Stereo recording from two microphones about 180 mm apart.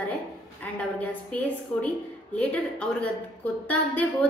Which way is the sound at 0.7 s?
10° left (ahead or behind).